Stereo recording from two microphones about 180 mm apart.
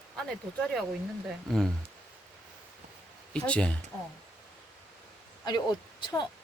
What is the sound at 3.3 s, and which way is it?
Speech, 5° left (ahead or behind).